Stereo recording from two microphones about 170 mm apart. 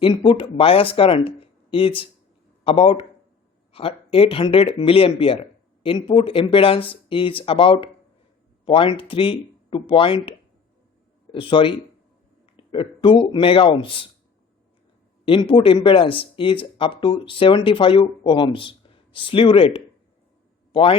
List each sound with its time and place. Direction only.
0.0 s speech: 30° left (ahead or behind)
15.2 s speech: 30° left (ahead or behind)